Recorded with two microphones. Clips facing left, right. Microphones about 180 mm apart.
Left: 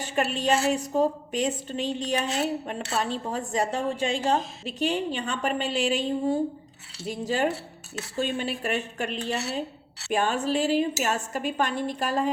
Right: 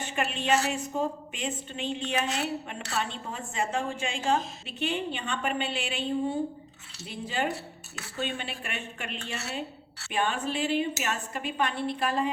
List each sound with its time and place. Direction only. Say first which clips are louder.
0.0 s a woman's voice: left 5 dB; 40° left (ahead or behind)